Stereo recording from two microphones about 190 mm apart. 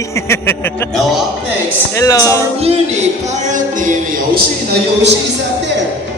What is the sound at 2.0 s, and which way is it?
Speech, 15° left (ahead or behind).